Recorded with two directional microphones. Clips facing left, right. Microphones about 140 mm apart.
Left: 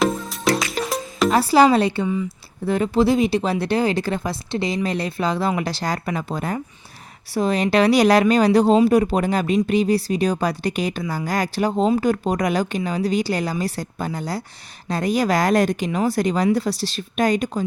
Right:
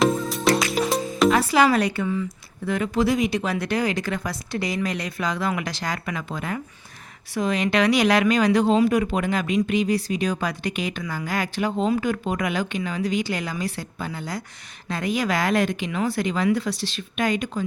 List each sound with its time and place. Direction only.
0.0 s music: centre (ahead or behind)
1.3 s speech: 35° left (ahead or behind)